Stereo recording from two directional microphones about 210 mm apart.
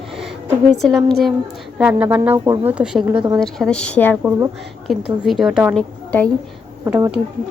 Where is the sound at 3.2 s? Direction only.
20° right (ahead or behind).